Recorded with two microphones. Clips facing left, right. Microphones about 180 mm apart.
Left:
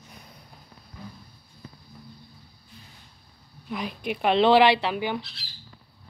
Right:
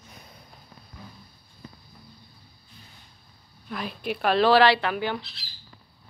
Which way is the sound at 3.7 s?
15° left (ahead or behind).